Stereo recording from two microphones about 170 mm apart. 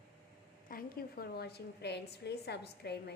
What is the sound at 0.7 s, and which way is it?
A woman's voice, 60° left (ahead or behind).